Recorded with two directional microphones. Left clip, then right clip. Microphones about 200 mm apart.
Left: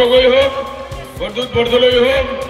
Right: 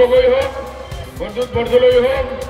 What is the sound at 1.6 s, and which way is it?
Speech, 20° right (ahead or behind).